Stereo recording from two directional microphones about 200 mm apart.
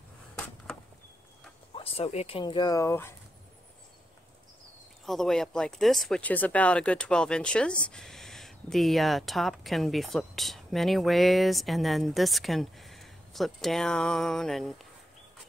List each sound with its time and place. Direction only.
1.8 s speech: 30° left (ahead or behind); by 3.2 s 15° left (ahead or behind)
5.0 s speech: centre (ahead or behind)